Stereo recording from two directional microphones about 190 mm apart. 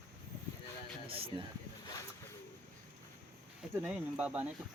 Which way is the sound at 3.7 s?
5° right (ahead or behind).